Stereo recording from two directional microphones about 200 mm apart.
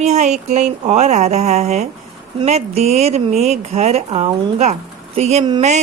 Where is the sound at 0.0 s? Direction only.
35° right (ahead or behind).